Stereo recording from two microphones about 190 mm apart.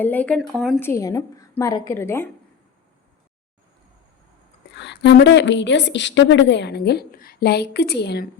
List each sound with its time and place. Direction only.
0.0 s speech: 10° left (ahead or behind)
0.8 s a woman's voice: 15° left (ahead or behind)
4.7 s a woman's voice: 65° left (ahead or behind)